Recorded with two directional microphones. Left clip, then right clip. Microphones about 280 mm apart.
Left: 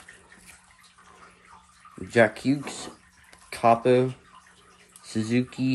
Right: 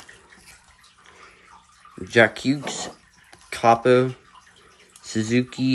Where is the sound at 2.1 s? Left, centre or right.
Centre.